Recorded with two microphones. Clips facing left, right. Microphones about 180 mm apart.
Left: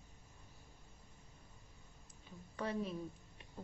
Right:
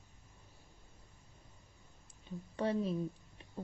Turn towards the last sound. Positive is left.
turn(degrees=-30)  # may be behind; listen again after turning